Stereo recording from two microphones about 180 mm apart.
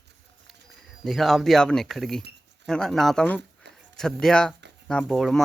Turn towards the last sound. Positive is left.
turn(degrees=0)  # may be behind; listen again after turning